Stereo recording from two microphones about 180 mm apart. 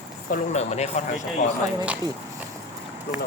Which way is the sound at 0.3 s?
40° left (ahead or behind).